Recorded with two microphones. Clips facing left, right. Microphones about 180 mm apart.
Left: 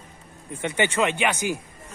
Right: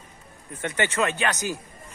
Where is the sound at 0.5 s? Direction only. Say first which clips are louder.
Left 2 dB; 15° left (ahead or behind).